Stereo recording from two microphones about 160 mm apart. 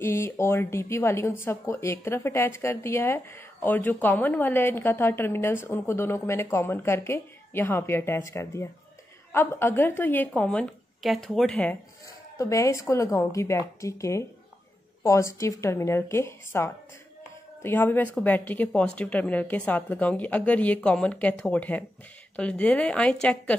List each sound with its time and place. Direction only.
0.0 s speech: 15° left (ahead or behind)
12.4 s a woman's voice: 20° left (ahead or behind)